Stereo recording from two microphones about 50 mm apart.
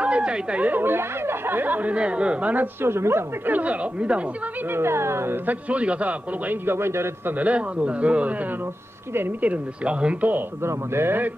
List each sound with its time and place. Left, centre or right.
0.0 s a sound: right
0.7 s speech: right
2.8 s speech: right
3.4 s speech: right
4.7 s speech: right
5.5 s speech: right
6.5 s a man's voice: right
7.2 s speech: right
9.4 s speech: right
10.6 s speech: right